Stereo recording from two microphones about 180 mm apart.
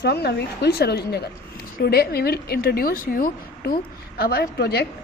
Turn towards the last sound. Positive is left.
turn(degrees=65)  # may be behind; listen again after turning